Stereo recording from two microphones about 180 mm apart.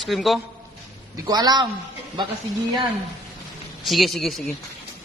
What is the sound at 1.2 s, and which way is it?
Speech, 20° right (ahead or behind).